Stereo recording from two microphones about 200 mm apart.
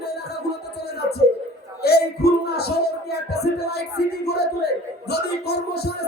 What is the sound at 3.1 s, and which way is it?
Music, 55° left (ahead or behind).